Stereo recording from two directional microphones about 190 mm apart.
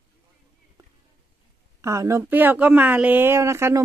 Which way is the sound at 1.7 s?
15° right (ahead or behind).